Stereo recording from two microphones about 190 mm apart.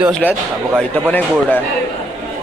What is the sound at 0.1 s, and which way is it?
Speech, 10° left (ahead or behind).